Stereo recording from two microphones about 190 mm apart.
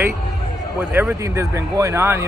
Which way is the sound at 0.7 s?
10° right (ahead or behind).